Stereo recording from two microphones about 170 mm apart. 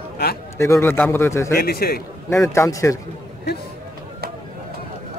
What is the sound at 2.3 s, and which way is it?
Speech, 15° left (ahead or behind).